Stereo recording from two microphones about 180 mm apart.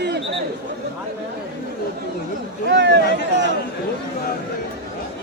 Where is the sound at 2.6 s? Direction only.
75° right (ahead or behind).